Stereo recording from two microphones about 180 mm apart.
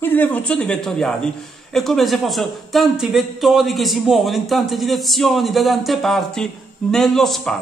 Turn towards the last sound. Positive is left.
turn(degrees=0)  # may be behind; listen again after turning